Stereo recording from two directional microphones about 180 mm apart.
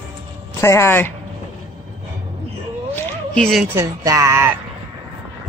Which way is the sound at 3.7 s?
15° right (ahead or behind).